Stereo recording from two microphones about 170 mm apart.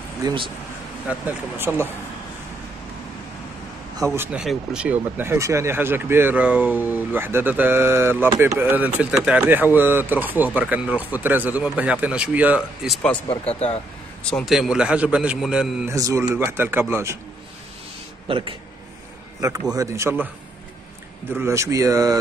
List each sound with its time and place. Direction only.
0.2 s speech: 30° right (ahead or behind)
1.0 s speech: 10° right (ahead or behind)
4.0 s speech: 15° right (ahead or behind); by 13.2 s 5° left (ahead or behind)
13.3 s speech: 35° left (ahead or behind)
14.3 s a man's voice: centre (ahead or behind)
15.9 s speech: 15° right (ahead or behind)
18.3 s speech: 30° right (ahead or behind)
19.7 s speech: 15° right (ahead or behind)
21.4 s speech: 15° right (ahead or behind)